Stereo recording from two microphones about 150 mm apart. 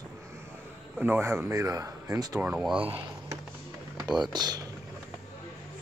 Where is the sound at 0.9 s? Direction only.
10° right (ahead or behind).